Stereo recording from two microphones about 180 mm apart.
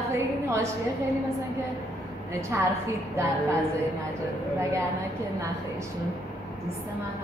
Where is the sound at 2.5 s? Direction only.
15° right (ahead or behind).